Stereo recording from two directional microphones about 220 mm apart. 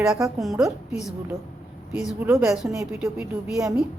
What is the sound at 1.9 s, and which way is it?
Speech, 5° right (ahead or behind).